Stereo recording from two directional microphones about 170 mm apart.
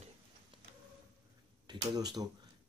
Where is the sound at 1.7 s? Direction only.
25° right (ahead or behind).